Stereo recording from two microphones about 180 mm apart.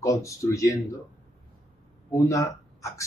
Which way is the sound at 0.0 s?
15° left (ahead or behind).